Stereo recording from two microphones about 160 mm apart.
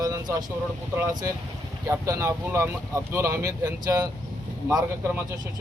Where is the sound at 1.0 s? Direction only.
20° right (ahead or behind).